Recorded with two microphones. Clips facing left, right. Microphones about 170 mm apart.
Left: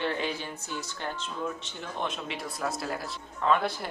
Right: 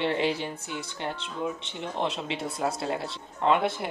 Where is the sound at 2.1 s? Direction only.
25° right (ahead or behind).